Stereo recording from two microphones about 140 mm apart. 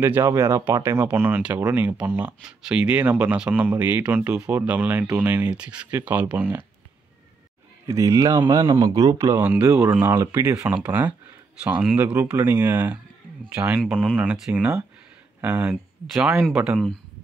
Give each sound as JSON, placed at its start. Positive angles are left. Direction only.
{"t": 0.0, "sound": "speech", "side_deg": -15}
{"t": 7.8, "sound": "speech", "side_deg": -20}
{"t": 9.4, "sound": "speech", "side_deg": -10}